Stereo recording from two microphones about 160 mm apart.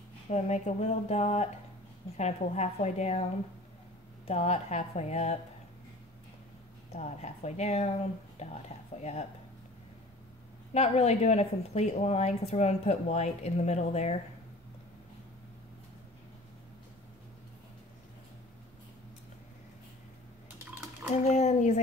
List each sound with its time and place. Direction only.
0.3 s a woman's voice: 45° left (ahead or behind)
4.3 s a woman's voice: 45° left (ahead or behind)
6.9 s a woman's voice: 45° left (ahead or behind)
10.7 s a woman's voice: 40° left (ahead or behind)
21.1 s a woman's voice: 45° left (ahead or behind)